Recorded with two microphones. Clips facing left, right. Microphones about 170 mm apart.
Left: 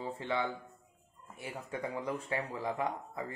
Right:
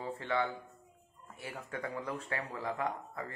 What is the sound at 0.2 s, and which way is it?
Speech, 20° left (ahead or behind).